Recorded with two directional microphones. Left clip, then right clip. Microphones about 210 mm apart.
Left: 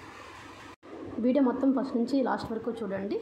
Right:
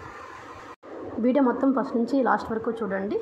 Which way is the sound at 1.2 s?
15° right (ahead or behind).